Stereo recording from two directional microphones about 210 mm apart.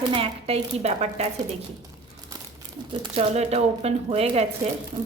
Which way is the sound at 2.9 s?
30° right (ahead or behind).